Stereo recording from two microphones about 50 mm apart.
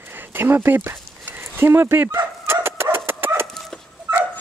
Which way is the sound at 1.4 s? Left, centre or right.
Right.